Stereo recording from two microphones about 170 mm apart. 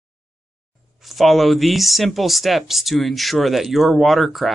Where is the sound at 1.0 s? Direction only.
Centre (ahead or behind).